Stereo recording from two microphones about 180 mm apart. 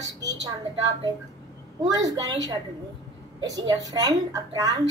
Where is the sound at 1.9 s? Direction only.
20° right (ahead or behind).